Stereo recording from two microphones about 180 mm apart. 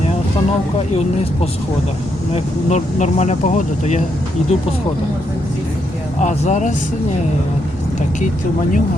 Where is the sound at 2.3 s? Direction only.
40° left (ahead or behind).